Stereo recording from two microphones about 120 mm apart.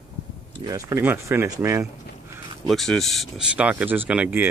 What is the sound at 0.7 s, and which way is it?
Speech, 30° right (ahead or behind).